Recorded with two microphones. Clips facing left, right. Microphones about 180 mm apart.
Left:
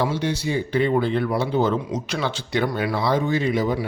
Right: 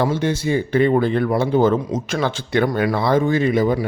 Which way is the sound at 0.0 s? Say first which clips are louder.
Right 4 dB; 50° right (ahead or behind).